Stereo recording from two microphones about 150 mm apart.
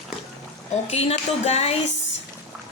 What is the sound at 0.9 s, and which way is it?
Speech, 45° left (ahead or behind).